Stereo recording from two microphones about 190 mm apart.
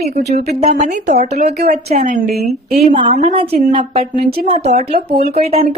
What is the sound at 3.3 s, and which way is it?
Speech, 25° right (ahead or behind).